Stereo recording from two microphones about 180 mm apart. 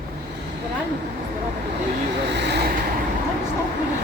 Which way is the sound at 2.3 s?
70° right (ahead or behind).